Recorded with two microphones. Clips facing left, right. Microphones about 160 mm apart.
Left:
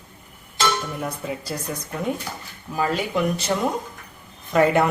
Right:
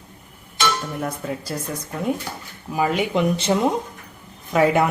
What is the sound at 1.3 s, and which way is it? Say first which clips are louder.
Speech: right 1 dB; centre (ahead or behind).